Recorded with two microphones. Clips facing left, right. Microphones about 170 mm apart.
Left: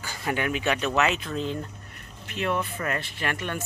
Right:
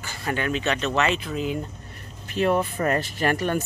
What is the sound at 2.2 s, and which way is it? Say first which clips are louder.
Speech: right 6 dB; 35° right (ahead or behind).